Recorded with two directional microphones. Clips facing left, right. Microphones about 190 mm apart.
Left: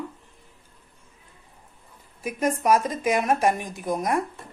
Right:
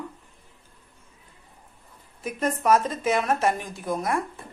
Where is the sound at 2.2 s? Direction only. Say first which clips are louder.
Left 1 dB; 10° left (ahead or behind).